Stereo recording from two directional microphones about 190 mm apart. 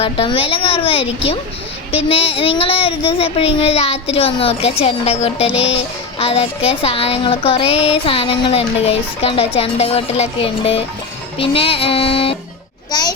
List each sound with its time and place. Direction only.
0.0 s a child's voice: 30° left (ahead or behind)